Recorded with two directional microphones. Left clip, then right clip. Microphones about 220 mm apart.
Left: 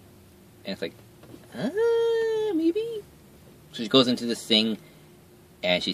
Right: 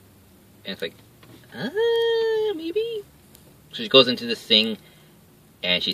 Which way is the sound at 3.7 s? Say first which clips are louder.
Right 5 dB; 15° right (ahead or behind).